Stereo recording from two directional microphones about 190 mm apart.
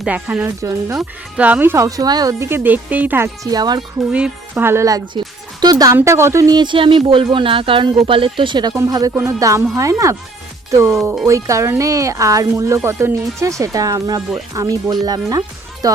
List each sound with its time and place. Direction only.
0.0 s speech: 10° right (ahead or behind)
4.1 s speech: 10° right (ahead or behind)